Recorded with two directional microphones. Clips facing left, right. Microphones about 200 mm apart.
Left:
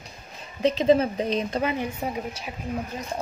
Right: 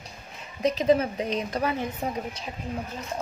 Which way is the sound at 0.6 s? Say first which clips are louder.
Left 2 dB; 25° left (ahead or behind).